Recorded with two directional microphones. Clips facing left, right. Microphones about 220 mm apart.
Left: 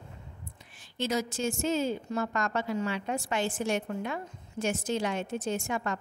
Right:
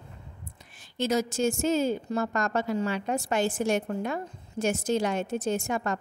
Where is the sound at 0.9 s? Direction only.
45° right (ahead or behind).